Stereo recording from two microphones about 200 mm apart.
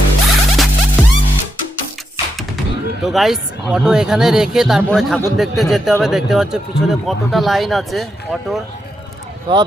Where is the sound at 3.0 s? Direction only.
Centre (ahead or behind).